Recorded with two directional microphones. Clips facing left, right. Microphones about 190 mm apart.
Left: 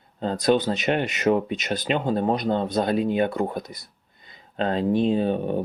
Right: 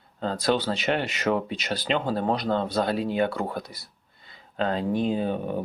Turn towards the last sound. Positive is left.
turn(degrees=30)  # may be behind; listen again after turning